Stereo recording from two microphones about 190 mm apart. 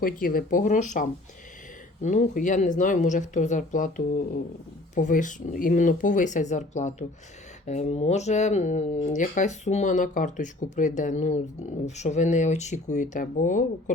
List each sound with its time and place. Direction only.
0.0 s speech: 50° left (ahead or behind)